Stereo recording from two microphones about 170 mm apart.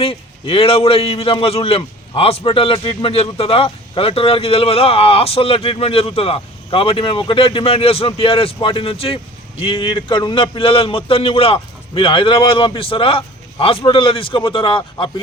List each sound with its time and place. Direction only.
0.0 s a man's voice: 35° left (ahead or behind)